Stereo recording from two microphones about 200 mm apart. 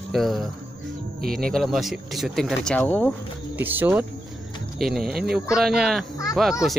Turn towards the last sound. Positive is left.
turn(degrees=0)  # may be behind; listen again after turning